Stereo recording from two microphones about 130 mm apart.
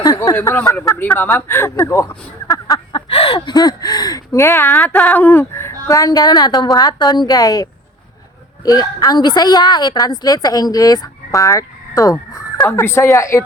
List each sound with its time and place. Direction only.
0.0 s a sound: 25° left (ahead or behind)
0.3 s speech: 15° left (ahead or behind); by 3.5 s 45° left (ahead or behind)
3.5 s speech: 30° left (ahead or behind)